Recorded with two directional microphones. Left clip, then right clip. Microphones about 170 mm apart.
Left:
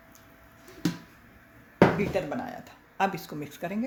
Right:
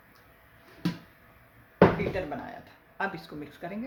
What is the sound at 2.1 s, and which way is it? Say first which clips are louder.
Speech: left 3 dB; 45° left (ahead or behind).